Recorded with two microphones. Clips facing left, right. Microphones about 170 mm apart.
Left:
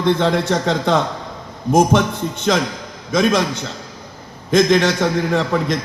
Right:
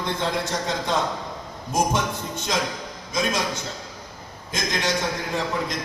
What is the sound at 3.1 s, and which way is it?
Speech, 65° left (ahead or behind).